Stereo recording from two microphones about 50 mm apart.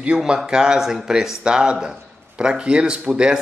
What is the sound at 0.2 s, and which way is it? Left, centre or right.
Speech, centre.